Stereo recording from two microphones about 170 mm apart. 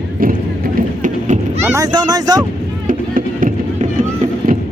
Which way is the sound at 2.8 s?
55° right (ahead or behind).